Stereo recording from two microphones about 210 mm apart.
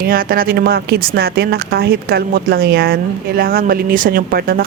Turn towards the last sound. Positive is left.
turn(degrees=-45)  # may be behind; listen again after turning